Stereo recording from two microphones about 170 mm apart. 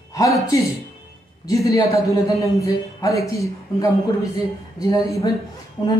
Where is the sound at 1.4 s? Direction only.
20° left (ahead or behind).